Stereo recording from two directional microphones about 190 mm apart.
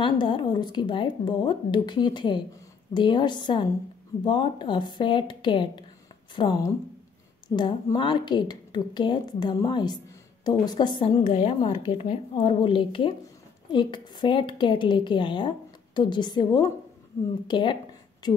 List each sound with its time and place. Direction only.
0.0 s a woman's voice: 25° left (ahead or behind)